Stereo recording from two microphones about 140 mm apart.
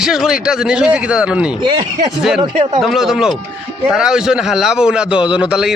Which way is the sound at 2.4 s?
40° right (ahead or behind).